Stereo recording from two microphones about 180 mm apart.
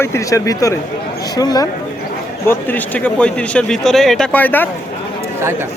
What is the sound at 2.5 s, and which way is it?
Speech, 10° left (ahead or behind).